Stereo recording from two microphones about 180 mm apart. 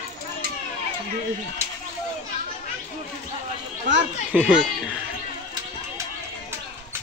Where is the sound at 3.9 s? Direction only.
90° right.